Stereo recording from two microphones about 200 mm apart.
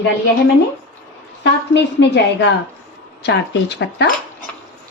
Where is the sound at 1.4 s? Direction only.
60° left (ahead or behind).